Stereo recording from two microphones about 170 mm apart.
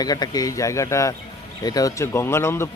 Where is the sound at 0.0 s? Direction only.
25° left (ahead or behind).